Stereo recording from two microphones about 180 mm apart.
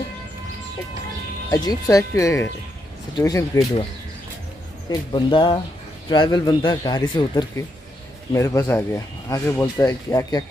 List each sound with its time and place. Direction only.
1.5 s speech: 20° left (ahead or behind)
4.8 s speech: 25° left (ahead or behind)